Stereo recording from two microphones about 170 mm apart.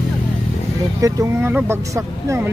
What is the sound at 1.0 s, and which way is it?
Speech, 10° right (ahead or behind).